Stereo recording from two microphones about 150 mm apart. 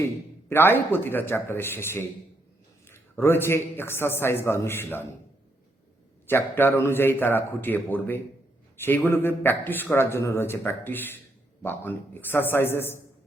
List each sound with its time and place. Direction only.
0.0 s a man's voice: 15° left (ahead or behind)
6.2 s speech: 15° left (ahead or behind)